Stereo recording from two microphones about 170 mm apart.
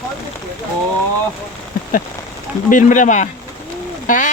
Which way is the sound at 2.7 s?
50° left (ahead or behind).